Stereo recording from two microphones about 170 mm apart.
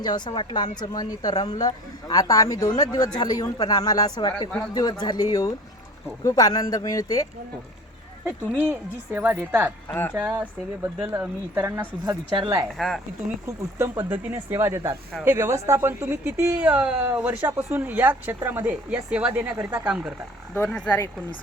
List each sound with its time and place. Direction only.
0.0 s speech: 25° left (ahead or behind)
8.2 s speech: 10° right (ahead or behind)
12.7 s speech: centre (ahead or behind)
13.7 s speech: 10° right (ahead or behind)
20.5 s speech: 10° left (ahead or behind)